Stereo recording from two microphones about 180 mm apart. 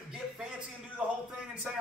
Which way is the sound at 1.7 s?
Centre (ahead or behind).